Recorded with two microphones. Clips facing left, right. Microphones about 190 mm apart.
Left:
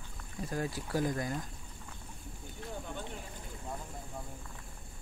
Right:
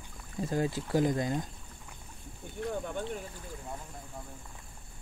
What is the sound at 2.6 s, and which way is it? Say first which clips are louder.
Speech: right 8 dB; 60° right (ahead or behind).